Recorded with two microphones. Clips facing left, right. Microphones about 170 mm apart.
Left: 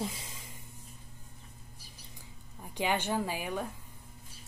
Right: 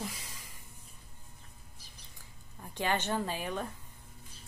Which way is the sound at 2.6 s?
15° left (ahead or behind).